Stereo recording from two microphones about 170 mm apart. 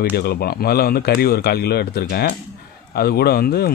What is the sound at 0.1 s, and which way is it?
Speech, 65° left (ahead or behind).